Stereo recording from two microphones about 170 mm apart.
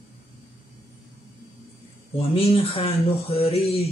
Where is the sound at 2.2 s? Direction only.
35° left (ahead or behind).